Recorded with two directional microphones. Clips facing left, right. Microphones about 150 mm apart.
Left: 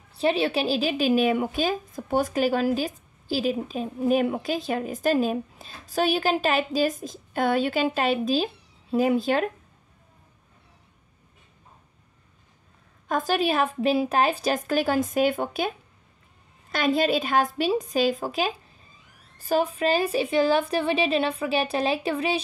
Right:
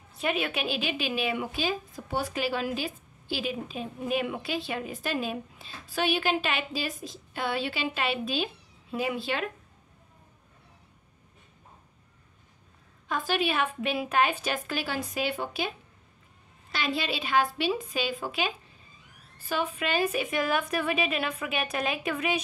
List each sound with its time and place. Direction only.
0.1 s a woman's voice: 30° left (ahead or behind)
13.1 s a woman's voice: 40° left (ahead or behind)
16.7 s a woman's voice: 45° left (ahead or behind); by 22.4 s 30° left (ahead or behind)